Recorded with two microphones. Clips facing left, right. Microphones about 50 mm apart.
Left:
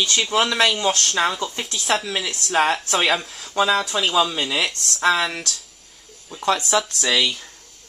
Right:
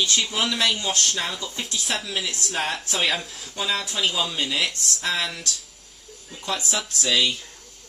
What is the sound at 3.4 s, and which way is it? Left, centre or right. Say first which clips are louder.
Speech: left 11 dB; left.